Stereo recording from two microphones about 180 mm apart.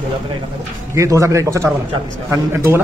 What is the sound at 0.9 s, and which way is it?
A man's voice, 15° right (ahead or behind).